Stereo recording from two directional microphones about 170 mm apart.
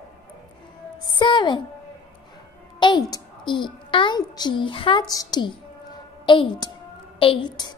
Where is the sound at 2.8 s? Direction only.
25° left (ahead or behind).